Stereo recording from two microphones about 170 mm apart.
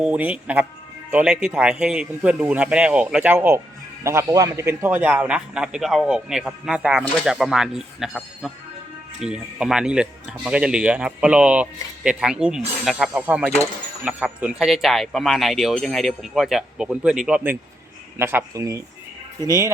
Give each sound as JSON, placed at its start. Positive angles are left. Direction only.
{"t": 0.0, "sound": "a man's voice", "side_deg": -10}